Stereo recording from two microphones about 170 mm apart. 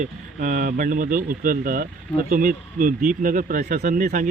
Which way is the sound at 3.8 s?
50° right (ahead or behind).